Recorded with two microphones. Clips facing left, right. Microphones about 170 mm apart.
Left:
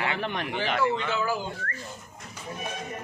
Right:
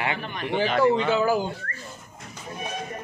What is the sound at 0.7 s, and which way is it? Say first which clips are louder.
Speech: right 6 dB; 35° right (ahead or behind).